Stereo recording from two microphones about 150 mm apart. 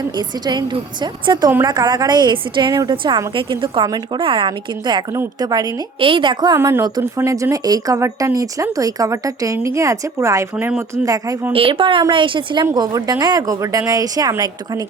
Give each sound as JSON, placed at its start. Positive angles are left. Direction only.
{"t": 0.2, "sound": "a woman's voice", "side_deg": -30}
{"t": 6.6, "sound": "a woman's voice", "side_deg": -20}
{"t": 11.5, "sound": "a woman's voice", "side_deg": -35}